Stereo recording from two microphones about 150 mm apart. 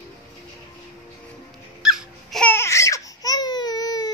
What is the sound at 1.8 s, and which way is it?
Baby cry, centre (ahead or behind).